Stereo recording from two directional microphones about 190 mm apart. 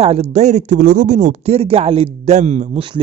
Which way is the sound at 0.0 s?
35° right (ahead or behind).